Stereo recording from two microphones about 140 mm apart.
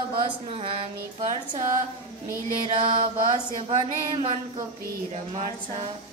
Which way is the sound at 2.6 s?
35° right (ahead or behind).